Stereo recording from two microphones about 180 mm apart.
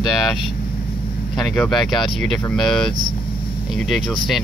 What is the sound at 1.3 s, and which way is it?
Speech, 5° left (ahead or behind).